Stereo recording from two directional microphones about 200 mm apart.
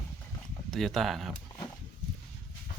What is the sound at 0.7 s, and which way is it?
Speech, centre (ahead or behind).